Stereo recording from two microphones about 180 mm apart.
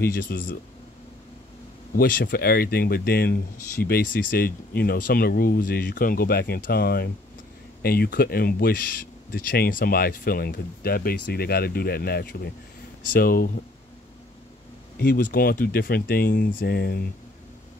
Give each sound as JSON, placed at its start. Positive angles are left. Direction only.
{"t": 0.1, "sound": "speech", "side_deg": 50}
{"t": 2.0, "sound": "speech", "side_deg": 55}
{"t": 15.0, "sound": "speech", "side_deg": 55}